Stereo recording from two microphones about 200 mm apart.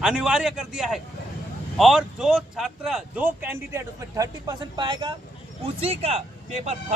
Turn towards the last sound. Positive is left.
turn(degrees=-35)  # may be behind; listen again after turning